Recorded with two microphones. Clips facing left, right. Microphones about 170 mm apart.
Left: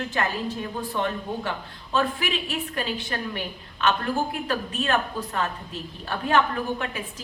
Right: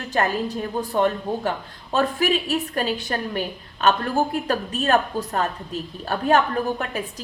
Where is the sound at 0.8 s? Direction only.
40° right (ahead or behind).